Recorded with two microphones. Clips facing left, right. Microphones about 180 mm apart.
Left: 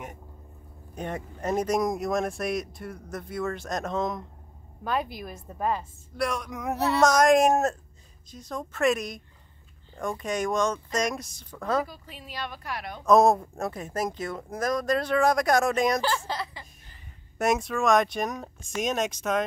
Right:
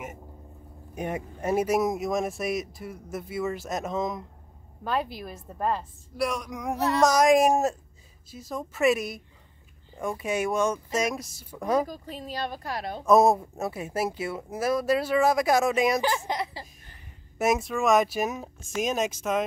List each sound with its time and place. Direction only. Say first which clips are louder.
0.9 s speech: right 2 dB; 10° right (ahead or behind)
11.5 s speech: right 2 dB; 15° right (ahead or behind)
11.8 s a woman's voice: right 4 dB; 40° right (ahead or behind)
13.0 s speech: even; 5° right (ahead or behind)
16.1 s speech: right 1 dB; 20° right (ahead or behind)
17.4 s speech: even; centre (ahead or behind)